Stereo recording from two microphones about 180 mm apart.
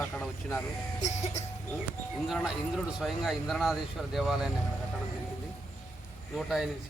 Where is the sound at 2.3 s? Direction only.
Centre (ahead or behind).